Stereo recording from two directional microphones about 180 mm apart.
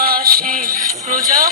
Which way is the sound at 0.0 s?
55° right (ahead or behind).